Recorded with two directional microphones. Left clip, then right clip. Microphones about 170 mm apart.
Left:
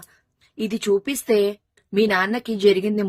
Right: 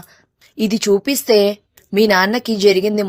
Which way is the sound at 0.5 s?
40° right (ahead or behind).